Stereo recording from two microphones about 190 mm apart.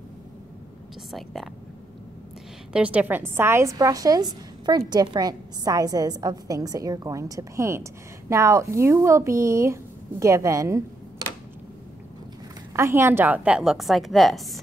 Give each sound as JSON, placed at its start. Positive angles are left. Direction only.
{"t": 1.1, "sound": "a woman's voice", "side_deg": 0}
{"t": 2.7, "sound": "a woman's voice", "side_deg": -5}
{"t": 12.7, "sound": "a woman's voice", "side_deg": -15}